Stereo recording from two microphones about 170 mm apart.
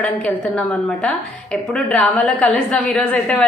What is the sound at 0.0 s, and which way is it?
A woman's voice, 5° left (ahead or behind).